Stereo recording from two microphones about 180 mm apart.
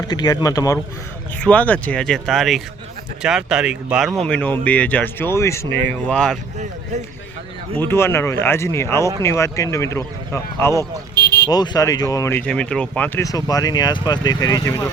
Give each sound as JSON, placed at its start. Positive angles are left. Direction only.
{"t": 0.1, "sound": "speech", "side_deg": 20}
{"t": 1.5, "sound": "speech", "side_deg": 10}
{"t": 4.2, "sound": "speech", "side_deg": 10}
{"t": 5.9, "sound": "speech", "side_deg": 5}
{"t": 7.8, "sound": "speech", "side_deg": 15}
{"t": 13.2, "sound": "speech", "side_deg": 20}